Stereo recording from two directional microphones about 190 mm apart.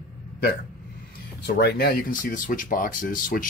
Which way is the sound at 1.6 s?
55° left (ahead or behind).